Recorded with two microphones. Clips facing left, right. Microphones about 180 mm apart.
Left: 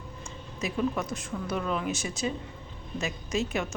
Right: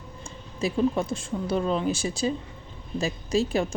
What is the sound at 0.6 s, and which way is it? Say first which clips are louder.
Speech: right 5 dB; 30° right (ahead or behind).